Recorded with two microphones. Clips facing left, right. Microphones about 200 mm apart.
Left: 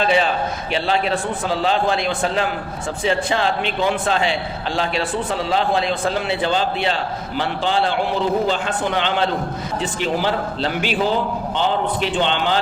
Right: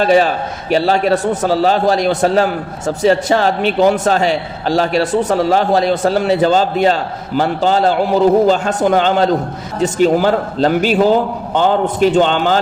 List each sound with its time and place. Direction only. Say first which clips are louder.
0.0 s a man's voice: right 6 dB; 45° right (ahead or behind)